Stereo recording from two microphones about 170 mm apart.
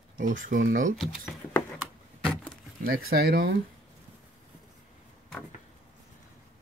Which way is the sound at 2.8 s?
60° right (ahead or behind).